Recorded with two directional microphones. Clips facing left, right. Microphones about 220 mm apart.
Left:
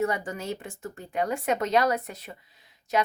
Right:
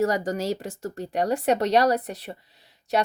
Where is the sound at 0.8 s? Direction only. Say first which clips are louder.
Right 3 dB; 35° right (ahead or behind).